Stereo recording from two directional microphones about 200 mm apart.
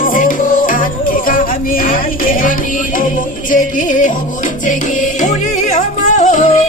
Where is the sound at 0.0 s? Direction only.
40° left (ahead or behind).